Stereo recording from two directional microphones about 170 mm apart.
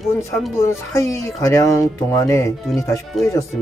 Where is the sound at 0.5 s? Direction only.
15° left (ahead or behind).